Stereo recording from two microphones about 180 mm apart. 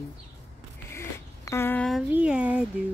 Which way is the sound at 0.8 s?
15° left (ahead or behind).